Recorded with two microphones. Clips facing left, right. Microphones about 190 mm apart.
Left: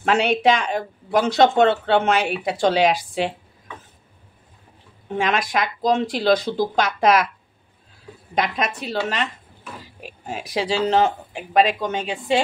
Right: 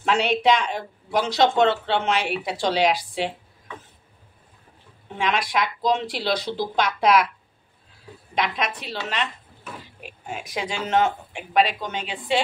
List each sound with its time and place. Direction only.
0.0 s speech: 50° left (ahead or behind)
5.1 s speech: 45° left (ahead or behind)
8.4 s speech: 45° left (ahead or behind)
10.2 s speech: 35° left (ahead or behind)